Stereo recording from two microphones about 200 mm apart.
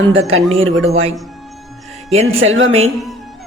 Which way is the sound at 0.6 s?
80° right.